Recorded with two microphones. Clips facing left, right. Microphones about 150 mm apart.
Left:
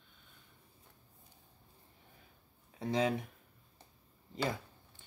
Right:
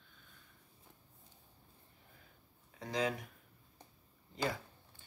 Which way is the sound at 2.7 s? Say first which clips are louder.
Left 4 dB; 25° left (ahead or behind).